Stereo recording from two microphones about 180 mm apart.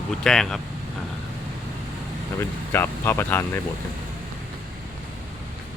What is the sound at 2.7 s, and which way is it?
Speech, 10° left (ahead or behind).